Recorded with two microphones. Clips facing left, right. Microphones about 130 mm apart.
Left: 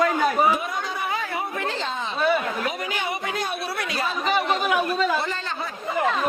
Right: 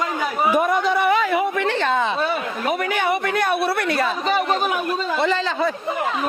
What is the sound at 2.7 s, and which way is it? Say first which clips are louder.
A woman's voice: right 8 dB; 60° right (ahead or behind).